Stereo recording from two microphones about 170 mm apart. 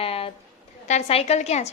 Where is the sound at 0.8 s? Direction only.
40° left (ahead or behind).